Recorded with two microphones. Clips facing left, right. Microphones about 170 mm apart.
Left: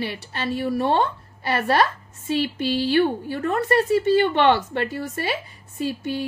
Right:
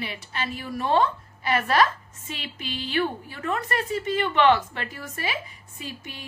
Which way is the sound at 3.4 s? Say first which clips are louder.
Left 6 dB; 40° left (ahead or behind).